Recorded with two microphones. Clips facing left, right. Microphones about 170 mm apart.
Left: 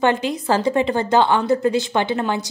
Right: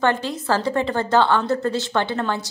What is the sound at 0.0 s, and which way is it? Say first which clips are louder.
A woman's voice: left 2 dB; 15° left (ahead or behind).